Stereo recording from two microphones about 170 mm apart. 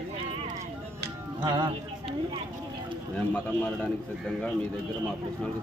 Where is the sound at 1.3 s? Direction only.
25° right (ahead or behind).